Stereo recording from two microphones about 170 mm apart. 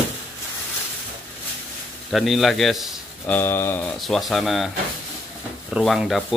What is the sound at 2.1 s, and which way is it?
Speech, centre (ahead or behind).